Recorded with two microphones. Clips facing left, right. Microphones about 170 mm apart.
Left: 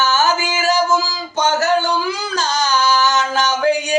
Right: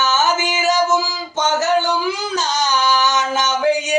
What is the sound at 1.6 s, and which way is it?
Singing, 20° right (ahead or behind).